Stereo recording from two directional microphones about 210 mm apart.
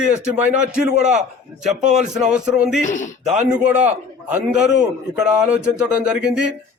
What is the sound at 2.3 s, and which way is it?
Speech, 5° right (ahead or behind).